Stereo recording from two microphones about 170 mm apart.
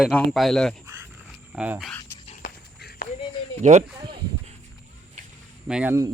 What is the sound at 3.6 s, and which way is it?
Speech, 45° right (ahead or behind).